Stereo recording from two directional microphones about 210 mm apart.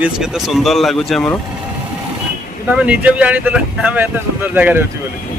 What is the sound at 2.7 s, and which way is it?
Speech, 5° right (ahead or behind).